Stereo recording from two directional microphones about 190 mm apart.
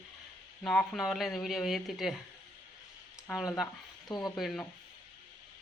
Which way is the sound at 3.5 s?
Centre (ahead or behind).